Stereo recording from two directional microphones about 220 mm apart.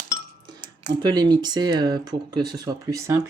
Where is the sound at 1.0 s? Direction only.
20° right (ahead or behind).